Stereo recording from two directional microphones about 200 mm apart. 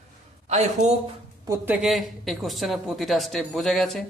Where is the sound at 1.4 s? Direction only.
10° right (ahead or behind).